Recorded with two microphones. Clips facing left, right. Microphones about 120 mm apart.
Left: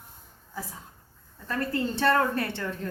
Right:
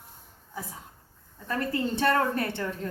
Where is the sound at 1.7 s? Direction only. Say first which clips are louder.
Left 1 dB; 20° right (ahead or behind).